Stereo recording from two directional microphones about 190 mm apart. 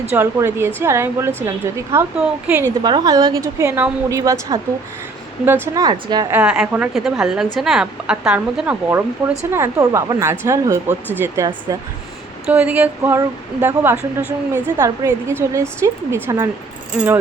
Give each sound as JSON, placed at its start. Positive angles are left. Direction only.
{"t": 0.1, "sound": "speech", "side_deg": -15}
{"t": 2.8, "sound": "a woman's voice", "side_deg": -20}
{"t": 6.3, "sound": "a woman's voice", "side_deg": -5}